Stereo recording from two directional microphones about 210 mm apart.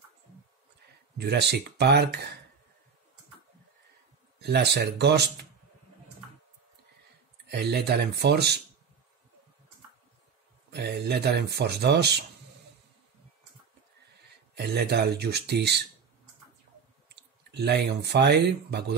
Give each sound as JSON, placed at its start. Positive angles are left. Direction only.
{"t": 1.1, "sound": "speech", "side_deg": -50}
{"t": 4.4, "sound": "speech", "side_deg": -50}
{"t": 7.4, "sound": "speech", "side_deg": -50}
{"t": 10.7, "sound": "speech", "side_deg": -50}
{"t": 14.5, "sound": "speech", "side_deg": -50}
{"t": 17.1, "sound": "speech", "side_deg": -55}